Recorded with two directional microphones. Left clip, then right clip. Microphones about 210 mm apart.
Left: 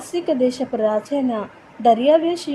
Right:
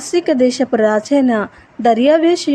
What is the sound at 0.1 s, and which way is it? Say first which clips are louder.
A woman's voice: right 6 dB; 25° right (ahead or behind).